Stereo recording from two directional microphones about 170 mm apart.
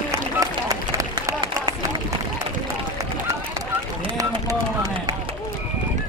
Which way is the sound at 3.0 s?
15° right (ahead or behind).